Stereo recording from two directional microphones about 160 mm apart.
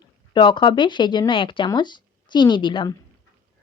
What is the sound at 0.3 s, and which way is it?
Speech, 30° left (ahead or behind).